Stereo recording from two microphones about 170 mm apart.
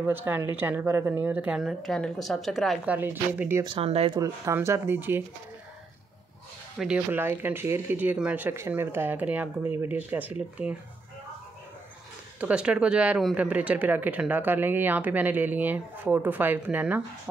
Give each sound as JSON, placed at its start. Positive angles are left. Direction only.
{"t": 0.0, "sound": "speech", "side_deg": -10}
{"t": 1.6, "sound": "a woman's voice", "side_deg": 0}
{"t": 3.6, "sound": "speech", "side_deg": -35}
{"t": 4.2, "sound": "speech", "side_deg": -15}
{"t": 6.8, "sound": "speech", "side_deg": -10}
{"t": 12.4, "sound": "speech", "side_deg": -5}